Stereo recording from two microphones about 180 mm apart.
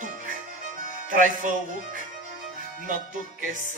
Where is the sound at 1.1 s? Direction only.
45° right (ahead or behind).